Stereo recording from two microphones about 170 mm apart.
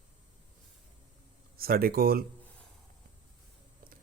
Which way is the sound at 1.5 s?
60° right (ahead or behind).